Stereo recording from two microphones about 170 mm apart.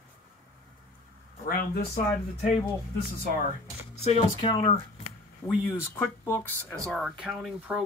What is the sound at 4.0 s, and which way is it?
Speech, 40° left (ahead or behind).